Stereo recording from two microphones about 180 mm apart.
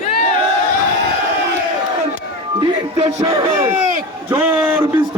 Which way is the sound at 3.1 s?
25° right (ahead or behind).